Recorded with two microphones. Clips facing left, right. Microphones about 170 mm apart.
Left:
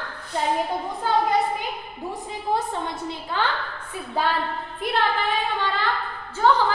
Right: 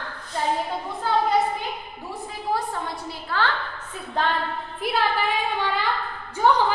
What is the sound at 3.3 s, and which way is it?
Speech, 20° left (ahead or behind).